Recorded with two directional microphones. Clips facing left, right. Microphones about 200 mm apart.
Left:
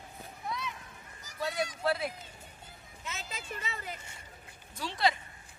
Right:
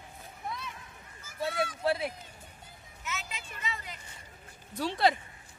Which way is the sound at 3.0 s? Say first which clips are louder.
Right 2 dB; 35° left (ahead or behind).